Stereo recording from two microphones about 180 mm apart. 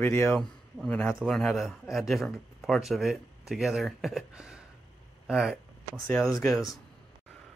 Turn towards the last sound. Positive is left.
turn(degrees=0)  # may be behind; listen again after turning